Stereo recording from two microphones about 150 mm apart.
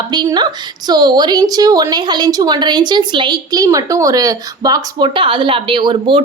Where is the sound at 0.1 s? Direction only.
30° right (ahead or behind).